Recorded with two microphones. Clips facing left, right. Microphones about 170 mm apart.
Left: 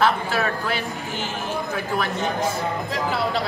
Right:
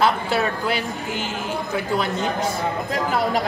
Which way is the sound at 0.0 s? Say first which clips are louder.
Right 1 dB; 15° right (ahead or behind).